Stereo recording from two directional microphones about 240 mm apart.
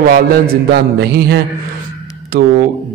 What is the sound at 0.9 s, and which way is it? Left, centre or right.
Mantra, right.